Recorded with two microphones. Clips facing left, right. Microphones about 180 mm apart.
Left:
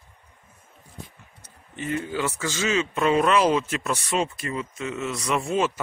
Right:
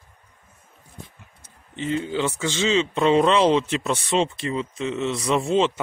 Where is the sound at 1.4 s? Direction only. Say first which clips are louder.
Right 3 dB; 25° right (ahead or behind).